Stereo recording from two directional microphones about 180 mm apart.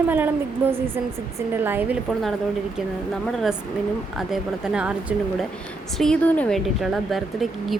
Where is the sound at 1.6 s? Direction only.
10° right (ahead or behind).